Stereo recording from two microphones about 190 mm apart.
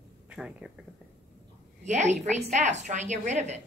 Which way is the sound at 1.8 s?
40° right (ahead or behind).